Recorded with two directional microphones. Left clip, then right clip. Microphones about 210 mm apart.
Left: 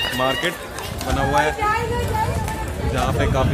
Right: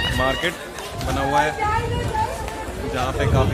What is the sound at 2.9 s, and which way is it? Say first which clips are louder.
Speech: left 1 dB; centre (ahead or behind).